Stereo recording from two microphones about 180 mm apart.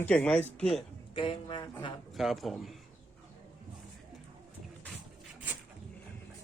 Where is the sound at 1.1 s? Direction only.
30° left (ahead or behind).